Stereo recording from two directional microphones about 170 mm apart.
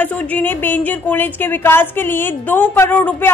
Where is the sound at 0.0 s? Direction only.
10° left (ahead or behind).